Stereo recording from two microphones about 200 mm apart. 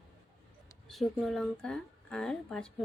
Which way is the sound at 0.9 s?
Centre (ahead or behind).